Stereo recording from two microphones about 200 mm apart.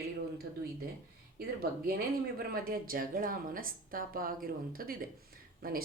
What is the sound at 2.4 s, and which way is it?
Speech, 50° right (ahead or behind).